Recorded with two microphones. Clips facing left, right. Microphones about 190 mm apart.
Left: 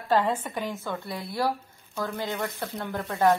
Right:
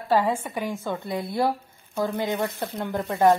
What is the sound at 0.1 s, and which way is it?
Speech, 10° right (ahead or behind).